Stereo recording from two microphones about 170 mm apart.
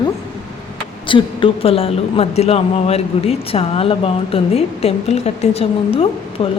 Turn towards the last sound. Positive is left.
turn(degrees=35)  # may be behind; listen again after turning